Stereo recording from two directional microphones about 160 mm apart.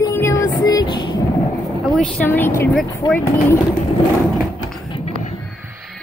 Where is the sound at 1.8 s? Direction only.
5° left (ahead or behind).